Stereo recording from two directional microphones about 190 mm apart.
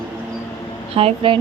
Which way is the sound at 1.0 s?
30° right (ahead or behind).